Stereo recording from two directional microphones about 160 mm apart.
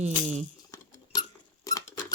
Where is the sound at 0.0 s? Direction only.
45° right (ahead or behind).